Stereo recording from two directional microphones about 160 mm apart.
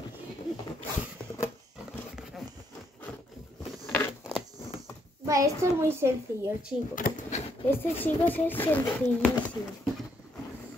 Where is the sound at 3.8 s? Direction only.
15° left (ahead or behind).